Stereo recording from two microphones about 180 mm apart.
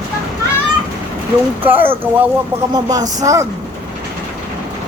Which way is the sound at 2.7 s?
20° right (ahead or behind).